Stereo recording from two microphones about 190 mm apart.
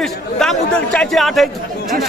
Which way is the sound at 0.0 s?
Centre (ahead or behind).